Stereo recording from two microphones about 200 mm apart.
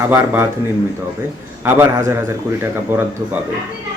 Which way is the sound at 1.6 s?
10° right (ahead or behind).